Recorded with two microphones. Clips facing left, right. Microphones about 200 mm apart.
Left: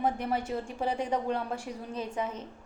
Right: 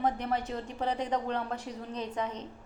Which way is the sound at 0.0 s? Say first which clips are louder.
Left 1 dB; 10° left (ahead or behind).